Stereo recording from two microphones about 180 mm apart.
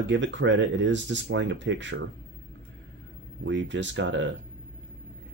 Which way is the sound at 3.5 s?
85° right.